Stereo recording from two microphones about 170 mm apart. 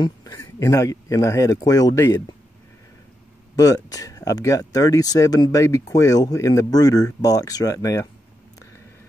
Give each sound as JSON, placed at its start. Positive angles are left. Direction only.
{"t": 0.0, "sound": "speech", "side_deg": 20}
{"t": 3.5, "sound": "speech", "side_deg": 20}